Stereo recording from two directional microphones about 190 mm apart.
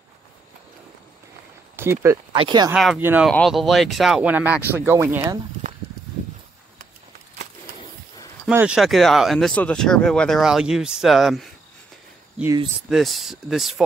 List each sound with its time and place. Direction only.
1.8 s speech: 15° right (ahead or behind)
2.3 s speech: 25° right (ahead or behind)
2.7 s speech: centre (ahead or behind)
3.3 s speech: centre (ahead or behind)
8.5 s speech: 5° right (ahead or behind)
12.9 s speech: centre (ahead or behind)